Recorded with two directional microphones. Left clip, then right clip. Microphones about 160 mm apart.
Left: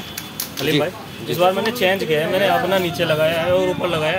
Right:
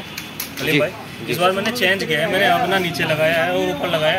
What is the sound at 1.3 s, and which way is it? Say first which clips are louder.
Speech: left 1 dB; 65° left (ahead or behind).